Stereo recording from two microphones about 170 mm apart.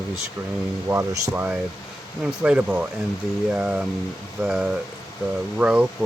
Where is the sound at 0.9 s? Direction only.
15° right (ahead or behind).